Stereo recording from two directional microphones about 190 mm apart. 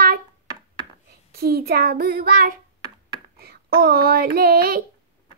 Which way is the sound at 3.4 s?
55° right (ahead or behind).